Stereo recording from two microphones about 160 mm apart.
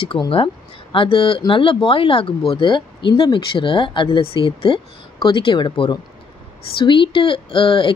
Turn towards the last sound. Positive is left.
turn(degrees=30)  # may be behind; listen again after turning